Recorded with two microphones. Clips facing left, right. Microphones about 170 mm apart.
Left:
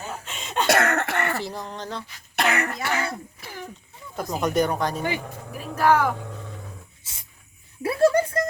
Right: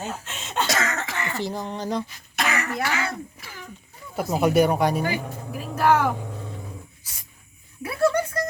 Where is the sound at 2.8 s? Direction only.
55° left (ahead or behind).